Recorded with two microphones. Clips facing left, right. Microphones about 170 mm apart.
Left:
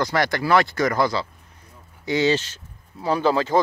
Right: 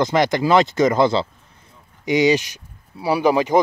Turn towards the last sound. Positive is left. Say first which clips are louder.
# right 3 dB
turn(degrees=-15)  # may be behind; listen again after turning